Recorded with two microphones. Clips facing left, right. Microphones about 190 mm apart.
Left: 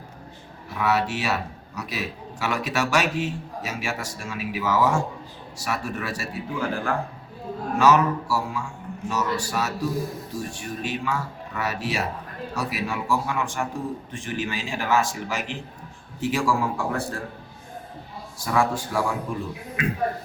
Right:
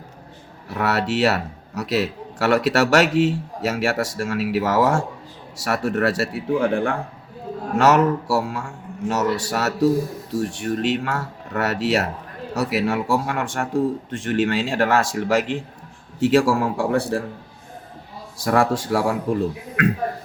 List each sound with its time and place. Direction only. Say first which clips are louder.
0.8 s a man's voice: right 4 dB; 70° right (ahead or behind)
7.8 s a man's voice: right 3 dB; 70° right (ahead or behind)
18.3 s a man's voice: right 5 dB; 75° right (ahead or behind)